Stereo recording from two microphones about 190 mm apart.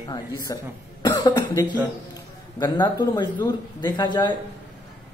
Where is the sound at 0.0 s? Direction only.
20° left (ahead or behind).